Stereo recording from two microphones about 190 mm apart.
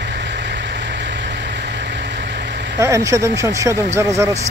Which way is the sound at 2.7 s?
15° right (ahead or behind).